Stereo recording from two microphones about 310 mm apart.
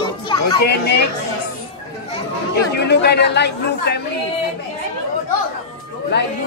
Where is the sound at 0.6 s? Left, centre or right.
Left.